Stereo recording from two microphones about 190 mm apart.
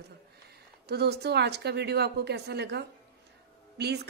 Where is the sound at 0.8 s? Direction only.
55° right (ahead or behind).